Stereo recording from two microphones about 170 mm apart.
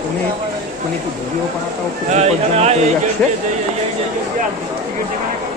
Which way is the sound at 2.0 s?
40° right (ahead or behind).